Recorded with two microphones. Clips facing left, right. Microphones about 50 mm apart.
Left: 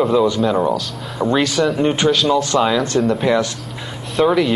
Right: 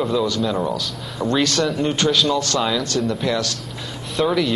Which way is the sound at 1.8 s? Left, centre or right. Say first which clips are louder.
Left 4 dB; left.